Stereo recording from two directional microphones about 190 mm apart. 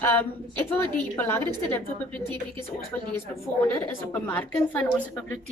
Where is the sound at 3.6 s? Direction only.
10° left (ahead or behind).